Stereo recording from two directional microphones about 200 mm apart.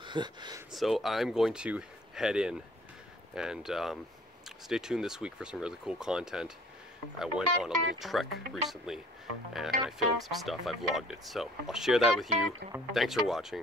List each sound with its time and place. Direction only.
0.0 s speech: 20° right (ahead or behind)
0.7 s speech: centre (ahead or behind)